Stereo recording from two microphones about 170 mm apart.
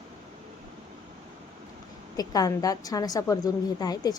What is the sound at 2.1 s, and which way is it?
A woman's voice, 20° left (ahead or behind).